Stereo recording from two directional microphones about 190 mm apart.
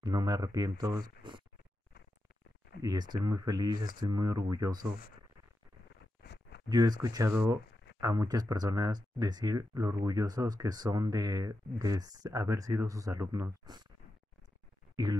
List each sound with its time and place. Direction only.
0.0 s speech: 20° right (ahead or behind)
2.8 s speech: 20° right (ahead or behind)
6.2 s a sound: 65° left (ahead or behind)
6.7 s speech: 20° right (ahead or behind)